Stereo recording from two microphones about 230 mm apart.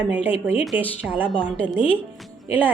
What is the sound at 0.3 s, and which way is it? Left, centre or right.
A woman's voice, centre.